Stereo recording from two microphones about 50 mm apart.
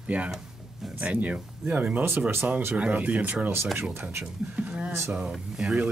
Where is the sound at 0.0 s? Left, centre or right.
Right.